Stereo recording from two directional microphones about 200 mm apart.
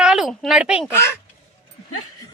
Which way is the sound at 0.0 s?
5° right (ahead or behind).